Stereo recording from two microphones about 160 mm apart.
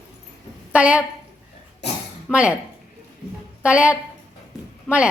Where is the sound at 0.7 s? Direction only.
10° right (ahead or behind).